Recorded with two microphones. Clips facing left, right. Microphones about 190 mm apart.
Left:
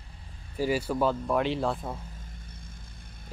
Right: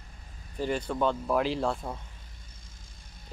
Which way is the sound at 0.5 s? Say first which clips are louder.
Left 2 dB; 5° left (ahead or behind).